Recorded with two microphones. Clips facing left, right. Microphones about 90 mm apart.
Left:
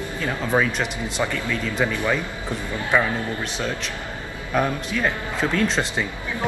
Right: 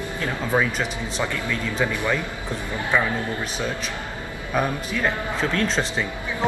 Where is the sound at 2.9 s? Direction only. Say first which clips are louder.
Left 2 dB; 10° left (ahead or behind).